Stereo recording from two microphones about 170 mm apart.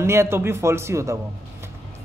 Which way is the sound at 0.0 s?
15° right (ahead or behind).